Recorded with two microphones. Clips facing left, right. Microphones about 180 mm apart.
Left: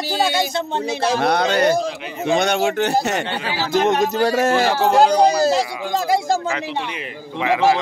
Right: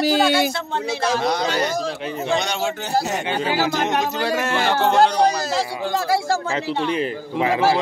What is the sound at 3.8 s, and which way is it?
Speech, 45° left (ahead or behind).